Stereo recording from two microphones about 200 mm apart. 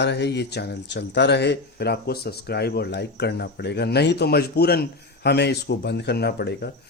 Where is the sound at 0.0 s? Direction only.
60° left (ahead or behind).